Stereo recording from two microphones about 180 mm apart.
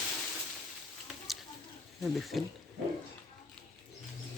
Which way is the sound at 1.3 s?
Centre (ahead or behind).